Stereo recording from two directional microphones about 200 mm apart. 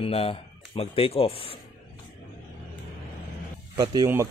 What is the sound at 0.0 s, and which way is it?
Speech, 30° left (ahead or behind).